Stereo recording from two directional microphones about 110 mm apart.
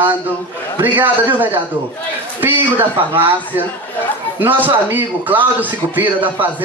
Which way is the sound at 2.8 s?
20° right (ahead or behind).